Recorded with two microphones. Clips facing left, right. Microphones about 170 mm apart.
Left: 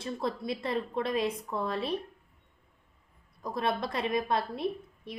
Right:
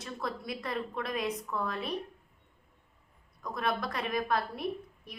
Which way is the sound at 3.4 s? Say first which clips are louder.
Left 2 dB; 25° left (ahead or behind).